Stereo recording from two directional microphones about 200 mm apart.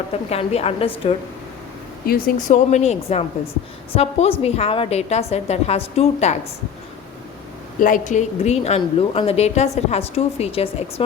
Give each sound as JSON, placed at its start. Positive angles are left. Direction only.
{"t": 0.1, "sound": "speech", "side_deg": 30}
{"t": 2.0, "sound": "speech", "side_deg": 45}
{"t": 7.8, "sound": "speech", "side_deg": 40}